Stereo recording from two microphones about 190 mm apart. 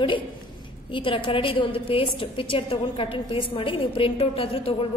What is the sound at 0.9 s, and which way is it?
A woman's voice, 25° left (ahead or behind).